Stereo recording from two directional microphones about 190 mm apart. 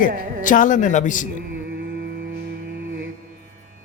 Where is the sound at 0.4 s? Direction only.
45° left (ahead or behind).